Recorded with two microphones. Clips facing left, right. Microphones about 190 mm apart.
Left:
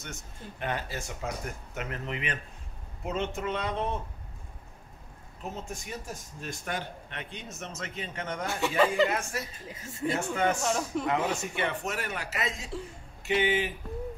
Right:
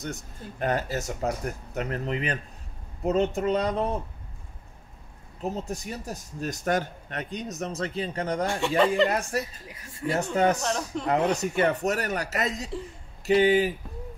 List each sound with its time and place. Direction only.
0.0 s a man's voice: 40° right (ahead or behind)
5.4 s a man's voice: 35° right (ahead or behind)
8.5 s speech: centre (ahead or behind)
9.3 s a man's voice: 40° right (ahead or behind)
9.7 s speech: 25° left (ahead or behind)
10.0 s a man's voice: 40° right (ahead or behind)
10.6 s speech: 5° left (ahead or behind)
11.3 s a man's voice: 40° right (ahead or behind)